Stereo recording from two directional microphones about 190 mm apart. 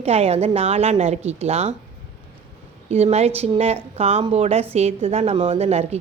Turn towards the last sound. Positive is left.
turn(degrees=-35)  # may be behind; listen again after turning